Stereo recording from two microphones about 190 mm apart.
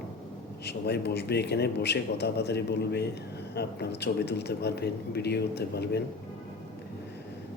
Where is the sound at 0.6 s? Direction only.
60° left (ahead or behind).